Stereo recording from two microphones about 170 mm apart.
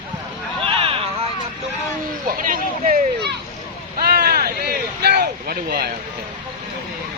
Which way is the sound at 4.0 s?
65° right (ahead or behind).